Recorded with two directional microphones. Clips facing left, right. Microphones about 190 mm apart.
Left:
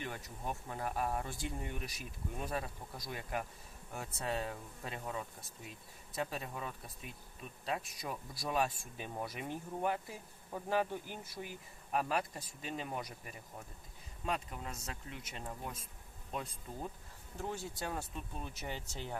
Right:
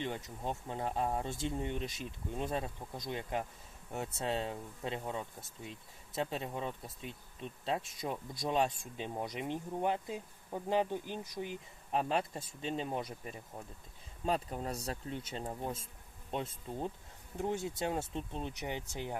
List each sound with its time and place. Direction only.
0.0 s speech: 20° right (ahead or behind)